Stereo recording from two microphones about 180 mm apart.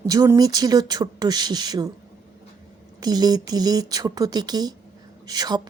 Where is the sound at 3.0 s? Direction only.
20° right (ahead or behind).